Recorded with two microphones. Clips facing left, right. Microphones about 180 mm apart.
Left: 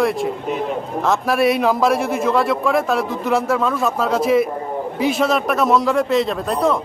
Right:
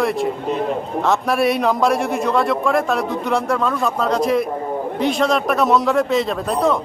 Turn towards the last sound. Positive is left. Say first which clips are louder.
# even
turn(degrees=0)  # may be behind; listen again after turning